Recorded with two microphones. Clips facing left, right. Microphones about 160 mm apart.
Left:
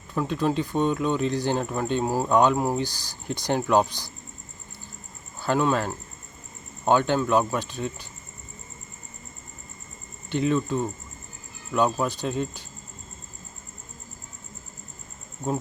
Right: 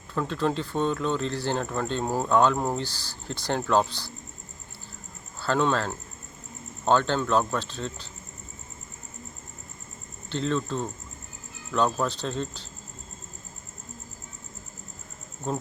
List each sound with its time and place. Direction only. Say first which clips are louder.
0.1 s speech: left 2 dB; 15° left (ahead or behind)
5.4 s speech: left 1 dB; 15° left (ahead or behind)
10.2 s speech: left 4 dB; 15° left (ahead or behind)
15.5 s speech: left 3 dB; 10° left (ahead or behind)